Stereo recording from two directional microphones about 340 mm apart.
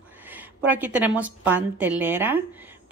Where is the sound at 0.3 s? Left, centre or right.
Centre.